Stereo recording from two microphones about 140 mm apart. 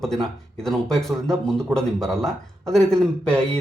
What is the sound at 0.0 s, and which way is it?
A man's voice, 5° left (ahead or behind).